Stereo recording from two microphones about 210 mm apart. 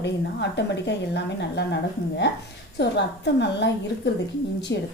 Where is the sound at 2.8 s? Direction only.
55° left (ahead or behind).